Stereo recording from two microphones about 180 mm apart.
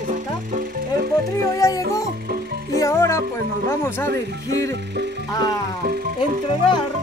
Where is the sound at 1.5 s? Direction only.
20° left (ahead or behind).